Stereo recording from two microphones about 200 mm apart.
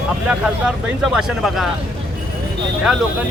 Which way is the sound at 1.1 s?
Centre (ahead or behind).